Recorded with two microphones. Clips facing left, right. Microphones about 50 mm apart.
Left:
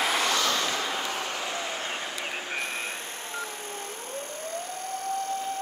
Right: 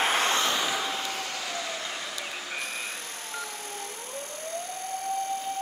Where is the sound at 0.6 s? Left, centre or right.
Centre.